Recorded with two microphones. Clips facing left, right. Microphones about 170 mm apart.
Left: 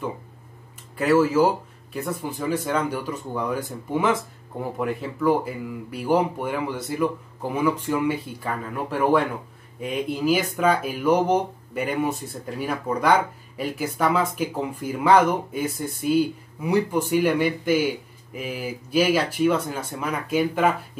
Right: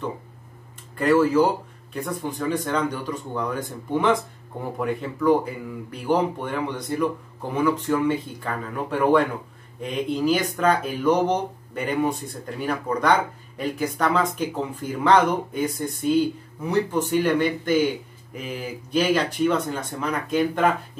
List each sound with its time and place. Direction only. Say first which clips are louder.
0.9 s speech: right 1 dB; 5° left (ahead or behind)